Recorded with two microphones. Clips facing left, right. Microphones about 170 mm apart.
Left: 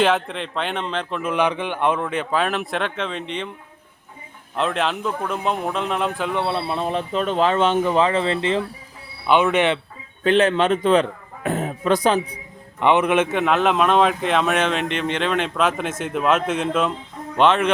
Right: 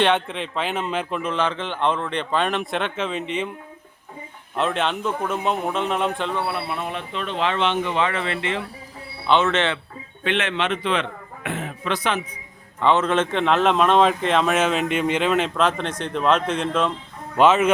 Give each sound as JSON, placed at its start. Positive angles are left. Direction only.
{"t": 0.0, "sound": "a man's voice", "side_deg": 0}
{"t": 1.2, "sound": "a man's voice", "side_deg": 15}
{"t": 4.5, "sound": "a man's voice", "side_deg": 0}
{"t": 6.3, "sound": "speech", "side_deg": 25}
{"t": 9.2, "sound": "speech", "side_deg": 10}
{"t": 10.2, "sound": "speech", "side_deg": 35}
{"t": 12.8, "sound": "a man's voice", "side_deg": 15}